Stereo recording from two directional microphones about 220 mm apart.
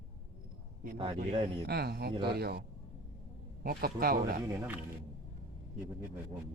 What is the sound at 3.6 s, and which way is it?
Speech, 40° right (ahead or behind).